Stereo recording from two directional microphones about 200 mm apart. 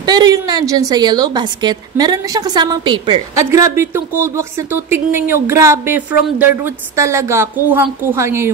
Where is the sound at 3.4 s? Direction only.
15° right (ahead or behind).